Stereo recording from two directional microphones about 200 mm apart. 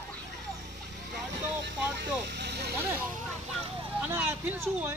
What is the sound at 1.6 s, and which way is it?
Speech, 60° right (ahead or behind).